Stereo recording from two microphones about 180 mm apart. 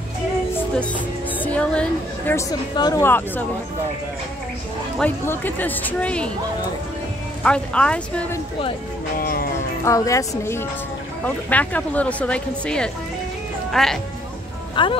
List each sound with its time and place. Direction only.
1.4 s a woman's voice: 5° left (ahead or behind)
2.7 s speech: 20° left (ahead or behind)
4.9 s speech: 10° left (ahead or behind)
7.4 s speech: 5° left (ahead or behind)
9.2 s music: 55° left (ahead or behind)
9.8 s speech: 15° left (ahead or behind); by 13.9 s centre (ahead or behind)
14.8 s speech: 25° left (ahead or behind)